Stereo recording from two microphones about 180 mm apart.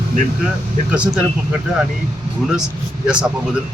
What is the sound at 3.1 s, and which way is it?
Speech, 5° right (ahead or behind).